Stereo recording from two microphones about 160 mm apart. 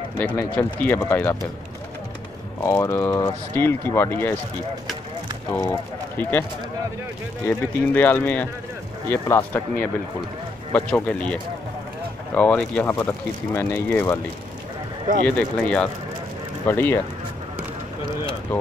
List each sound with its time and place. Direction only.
0.4 s speech: 15° left (ahead or behind)
2.6 s speech: 15° left (ahead or behind)
5.5 s speech: 15° left (ahead or behind)
7.4 s speech: 10° left (ahead or behind)
12.4 s speech: 10° left (ahead or behind)
15.2 s speech: 5° left (ahead or behind)